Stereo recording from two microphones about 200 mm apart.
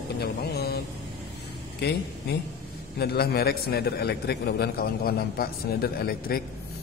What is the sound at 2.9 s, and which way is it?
A man's voice, 50° left (ahead or behind).